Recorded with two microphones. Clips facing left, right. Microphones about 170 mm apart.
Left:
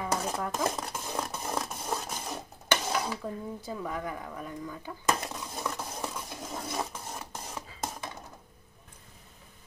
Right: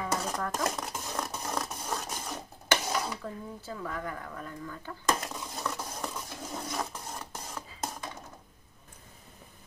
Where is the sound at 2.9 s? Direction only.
10° left (ahead or behind).